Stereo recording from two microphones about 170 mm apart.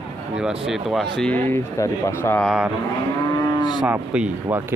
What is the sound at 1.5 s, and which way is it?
Speech, 15° left (ahead or behind).